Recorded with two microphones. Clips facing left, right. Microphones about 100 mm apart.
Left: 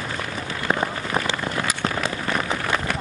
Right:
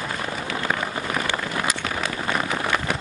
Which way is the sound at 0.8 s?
30° left (ahead or behind).